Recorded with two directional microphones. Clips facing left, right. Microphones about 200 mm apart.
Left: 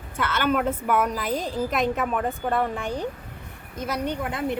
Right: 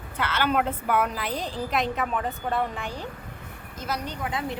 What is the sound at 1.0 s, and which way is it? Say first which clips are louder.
A woman's voice: left 4 dB; 45° left (ahead or behind).